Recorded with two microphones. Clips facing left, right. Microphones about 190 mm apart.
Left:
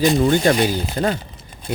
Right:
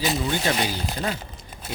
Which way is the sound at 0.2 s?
50° left (ahead or behind).